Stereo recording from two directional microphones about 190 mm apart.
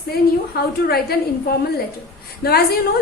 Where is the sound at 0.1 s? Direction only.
55° left (ahead or behind).